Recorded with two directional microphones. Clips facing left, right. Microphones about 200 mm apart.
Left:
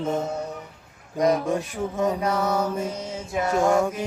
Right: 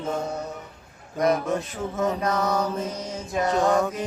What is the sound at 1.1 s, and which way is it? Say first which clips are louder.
Mantra: left 1 dB; 15° left (ahead or behind).